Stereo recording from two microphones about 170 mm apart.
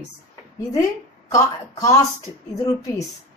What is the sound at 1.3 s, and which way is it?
Speech, 20° left (ahead or behind).